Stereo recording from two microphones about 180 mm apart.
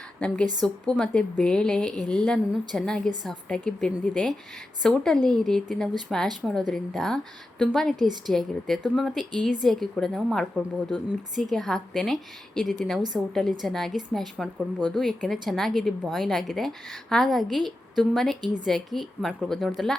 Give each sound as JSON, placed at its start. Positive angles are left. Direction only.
{"t": 0.2, "sound": "a woman's voice", "side_deg": 5}
{"t": 7.9, "sound": "a woman's voice", "side_deg": -25}
{"t": 8.3, "sound": "speech", "side_deg": 0}